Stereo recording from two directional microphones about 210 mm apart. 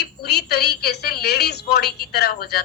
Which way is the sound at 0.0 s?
50° left (ahead or behind).